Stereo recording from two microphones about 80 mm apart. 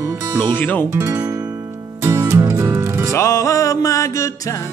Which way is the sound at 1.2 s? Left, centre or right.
Right.